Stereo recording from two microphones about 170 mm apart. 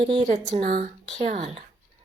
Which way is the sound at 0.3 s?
40° right (ahead or behind).